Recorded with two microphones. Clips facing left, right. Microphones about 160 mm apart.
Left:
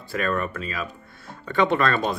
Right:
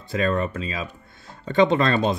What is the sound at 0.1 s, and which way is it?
Speech, 25° right (ahead or behind).